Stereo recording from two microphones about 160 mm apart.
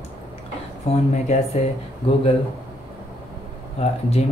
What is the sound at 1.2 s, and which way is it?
Speech, 45° left (ahead or behind).